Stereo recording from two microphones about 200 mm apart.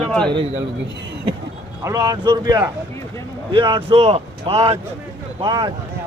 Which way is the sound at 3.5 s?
25° right (ahead or behind).